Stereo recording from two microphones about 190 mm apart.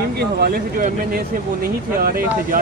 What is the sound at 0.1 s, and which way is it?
Speech, 55° right (ahead or behind).